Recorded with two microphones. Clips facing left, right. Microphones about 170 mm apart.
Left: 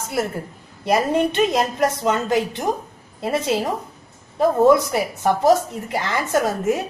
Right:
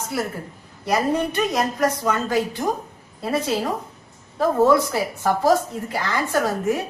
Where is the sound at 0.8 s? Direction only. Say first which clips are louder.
Left 3 dB; 25° left (ahead or behind).